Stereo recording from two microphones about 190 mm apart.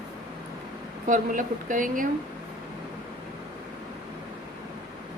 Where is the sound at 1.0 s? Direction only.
45° right (ahead or behind).